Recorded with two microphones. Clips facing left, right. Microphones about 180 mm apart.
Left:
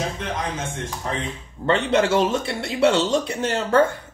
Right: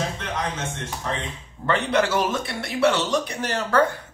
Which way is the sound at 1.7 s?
25° left (ahead or behind).